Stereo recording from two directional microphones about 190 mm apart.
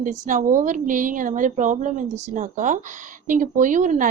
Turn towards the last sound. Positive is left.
turn(degrees=-40)  # may be behind; listen again after turning